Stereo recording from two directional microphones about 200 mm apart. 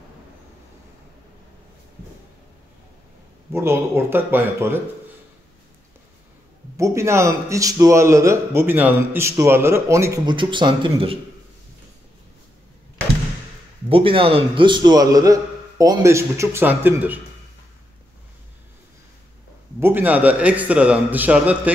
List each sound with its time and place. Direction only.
3.5 s speech: 10° right (ahead or behind)
6.8 s speech: 15° right (ahead or behind)
13.8 s a man's voice: 25° right (ahead or behind); by 17.2 s 10° right (ahead or behind)
19.8 s speech: 10° right (ahead or behind)